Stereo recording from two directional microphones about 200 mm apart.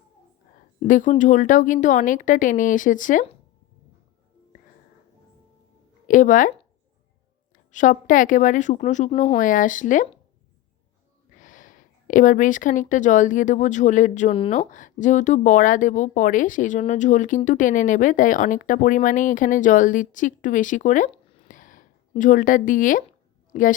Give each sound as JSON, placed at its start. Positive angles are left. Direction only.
{"t": 0.9, "sound": "speech", "side_deg": 40}
{"t": 6.1, "sound": "speech", "side_deg": 40}
{"t": 7.5, "sound": "speech", "side_deg": 40}
{"t": 11.3, "sound": "a woman's voice", "side_deg": 40}